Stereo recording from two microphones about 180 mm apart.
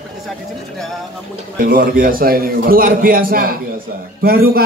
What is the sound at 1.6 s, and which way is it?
A man's voice, 50° right (ahead or behind).